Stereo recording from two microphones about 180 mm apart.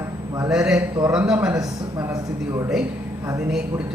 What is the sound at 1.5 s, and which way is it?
A man's voice, 20° right (ahead or behind).